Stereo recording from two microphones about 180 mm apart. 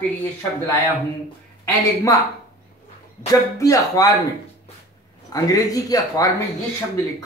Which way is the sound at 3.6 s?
20° left (ahead or behind).